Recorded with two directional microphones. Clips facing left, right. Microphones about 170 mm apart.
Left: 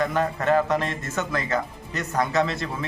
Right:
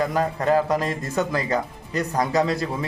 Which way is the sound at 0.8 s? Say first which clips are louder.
Right 4 dB; 35° right (ahead or behind).